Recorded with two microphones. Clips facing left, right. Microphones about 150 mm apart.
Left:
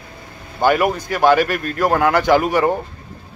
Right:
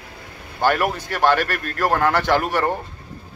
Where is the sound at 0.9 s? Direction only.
5° right (ahead or behind).